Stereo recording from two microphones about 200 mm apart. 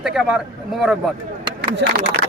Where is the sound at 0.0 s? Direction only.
5° right (ahead or behind).